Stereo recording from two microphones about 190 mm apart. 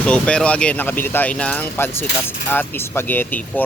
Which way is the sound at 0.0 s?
5° left (ahead or behind).